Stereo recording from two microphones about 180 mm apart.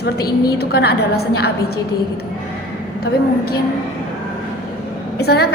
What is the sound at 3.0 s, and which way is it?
Speech, 60° left (ahead or behind).